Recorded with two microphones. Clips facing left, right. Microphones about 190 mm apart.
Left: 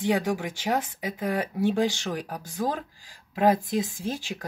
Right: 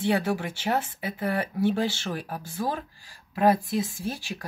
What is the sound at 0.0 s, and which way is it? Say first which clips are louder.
Speech: even; 15° left (ahead or behind).